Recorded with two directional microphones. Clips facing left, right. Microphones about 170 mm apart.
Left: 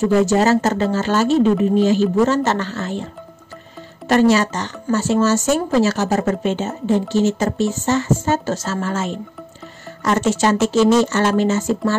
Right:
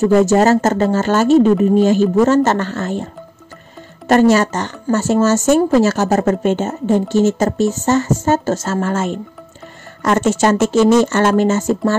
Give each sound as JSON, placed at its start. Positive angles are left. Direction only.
{"t": 0.0, "sound": "speech", "side_deg": -45}
{"t": 4.1, "sound": "speech", "side_deg": -50}